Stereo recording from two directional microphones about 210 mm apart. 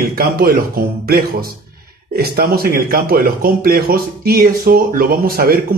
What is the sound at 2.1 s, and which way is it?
Speech, 45° right (ahead or behind).